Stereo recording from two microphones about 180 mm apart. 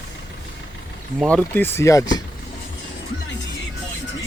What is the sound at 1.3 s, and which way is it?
Speech, 10° left (ahead or behind).